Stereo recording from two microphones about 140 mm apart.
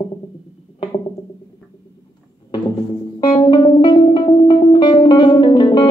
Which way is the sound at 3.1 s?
30° left (ahead or behind).